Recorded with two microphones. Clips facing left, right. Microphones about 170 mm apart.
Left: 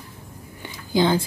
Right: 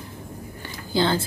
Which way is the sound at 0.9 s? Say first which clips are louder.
Left 3 dB; 15° left (ahead or behind).